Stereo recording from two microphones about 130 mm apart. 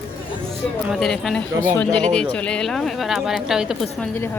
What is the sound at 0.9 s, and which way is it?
Speech, 5° left (ahead or behind).